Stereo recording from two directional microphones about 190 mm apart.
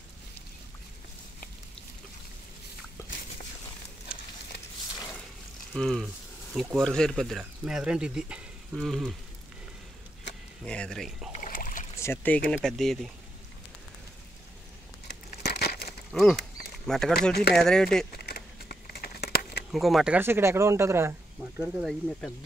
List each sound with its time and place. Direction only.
5.7 s speech: centre (ahead or behind)
10.6 s speech: 5° left (ahead or behind)
11.3 s boat: 45° left (ahead or behind)
12.0 s speech: 10° left (ahead or behind)
15.0 s crumpling: 60° left (ahead or behind)
16.1 s speech: centre (ahead or behind)
18.1 s crumpling: 55° left (ahead or behind)
19.7 s speech: centre (ahead or behind)